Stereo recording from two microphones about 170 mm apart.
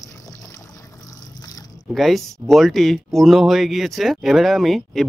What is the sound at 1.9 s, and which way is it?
A man's voice, centre (ahead or behind).